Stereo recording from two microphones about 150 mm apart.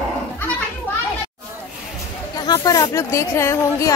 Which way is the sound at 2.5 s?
25° left (ahead or behind).